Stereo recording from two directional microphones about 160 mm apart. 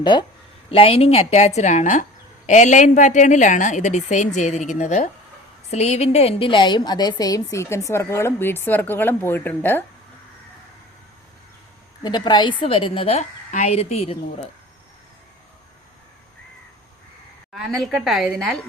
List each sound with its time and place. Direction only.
0.0 s a woman's voice: 30° left (ahead or behind); by 9.8 s 15° left (ahead or behind)
12.0 s a woman's voice: 25° left (ahead or behind)
17.5 s a woman's voice: centre (ahead or behind)